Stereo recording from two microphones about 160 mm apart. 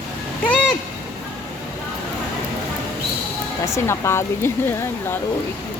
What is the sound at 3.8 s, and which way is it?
A woman's voice, 15° left (ahead or behind).